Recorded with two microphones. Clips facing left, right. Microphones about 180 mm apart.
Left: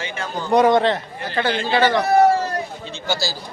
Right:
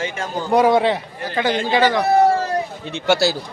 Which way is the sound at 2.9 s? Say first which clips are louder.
Right 10 dB; 70° right (ahead or behind).